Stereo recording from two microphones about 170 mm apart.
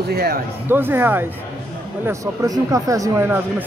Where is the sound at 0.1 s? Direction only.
65° right (ahead or behind).